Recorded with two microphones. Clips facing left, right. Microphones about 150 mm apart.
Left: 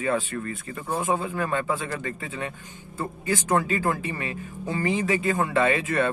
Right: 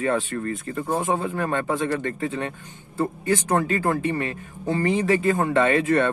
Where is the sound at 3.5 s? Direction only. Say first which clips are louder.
Right 2 dB; 40° right (ahead or behind).